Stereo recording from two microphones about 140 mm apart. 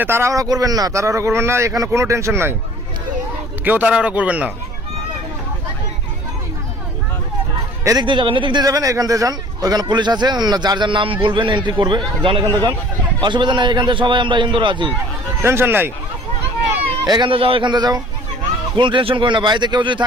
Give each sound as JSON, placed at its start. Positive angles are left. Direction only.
{"t": 0.0, "sound": "a man's voice", "side_deg": -20}
{"t": 3.6, "sound": "a man's voice", "side_deg": -10}
{"t": 7.9, "sound": "speech", "side_deg": -30}
{"t": 15.4, "sound": "a man's voice", "side_deg": -15}
{"t": 17.0, "sound": "speech", "side_deg": -30}